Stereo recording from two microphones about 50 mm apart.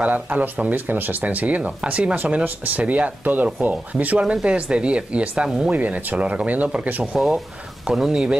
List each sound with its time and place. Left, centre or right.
0.0 s speech: right
4.2 s speech: right
5.8 s speech: right
7.8 s speech: centre